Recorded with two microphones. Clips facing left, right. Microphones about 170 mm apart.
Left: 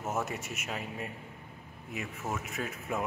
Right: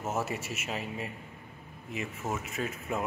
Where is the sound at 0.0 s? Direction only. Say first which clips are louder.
Right 1 dB; 5° right (ahead or behind).